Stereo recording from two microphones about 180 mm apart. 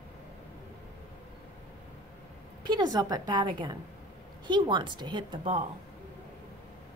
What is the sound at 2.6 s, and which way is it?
A woman's voice, 25° right (ahead or behind).